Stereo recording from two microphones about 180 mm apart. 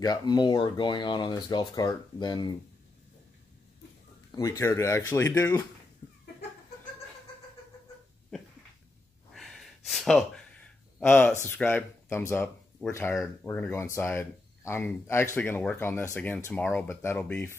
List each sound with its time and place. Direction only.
0.0 s speech: 25° left (ahead or behind)
4.4 s speech: 15° left (ahead or behind)
9.3 s a sound: centre (ahead or behind)
11.0 s speech: 10° left (ahead or behind)
13.1 s speech: centre (ahead or behind)
13.5 s speech: 10° left (ahead or behind)